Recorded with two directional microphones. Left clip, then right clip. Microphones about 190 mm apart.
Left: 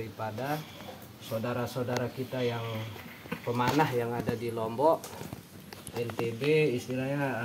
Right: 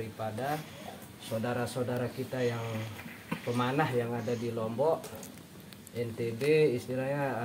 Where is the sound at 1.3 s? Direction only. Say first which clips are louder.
Even; centre (ahead or behind).